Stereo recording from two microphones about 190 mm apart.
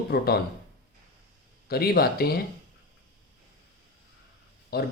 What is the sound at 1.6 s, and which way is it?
Speech, 55° left (ahead or behind).